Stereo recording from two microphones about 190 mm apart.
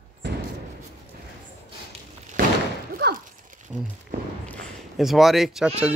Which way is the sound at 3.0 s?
60° right (ahead or behind).